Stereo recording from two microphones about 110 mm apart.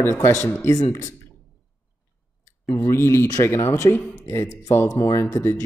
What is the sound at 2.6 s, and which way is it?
Speech, 25° left (ahead or behind).